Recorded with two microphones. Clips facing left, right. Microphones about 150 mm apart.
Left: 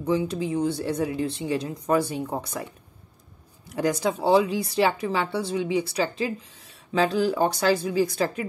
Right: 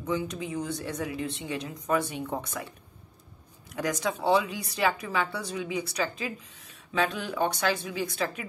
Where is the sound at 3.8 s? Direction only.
30° left (ahead or behind).